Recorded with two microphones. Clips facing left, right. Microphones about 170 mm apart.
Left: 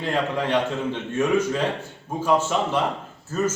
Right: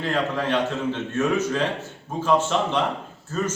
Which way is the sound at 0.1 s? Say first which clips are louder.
Left 1 dB; 15° left (ahead or behind).